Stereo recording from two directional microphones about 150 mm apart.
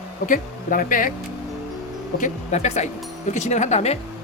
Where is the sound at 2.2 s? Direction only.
50° left (ahead or behind).